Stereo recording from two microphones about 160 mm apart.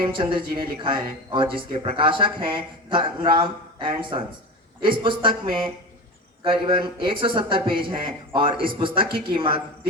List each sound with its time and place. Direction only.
0.0 s speech: 30° right (ahead or behind)